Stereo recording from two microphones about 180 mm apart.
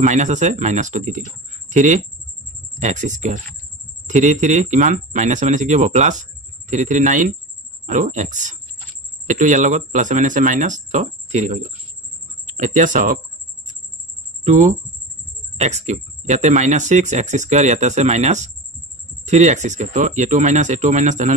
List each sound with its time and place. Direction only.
0.0 s speech: 40° right (ahead or behind)
14.4 s speech: 45° right (ahead or behind)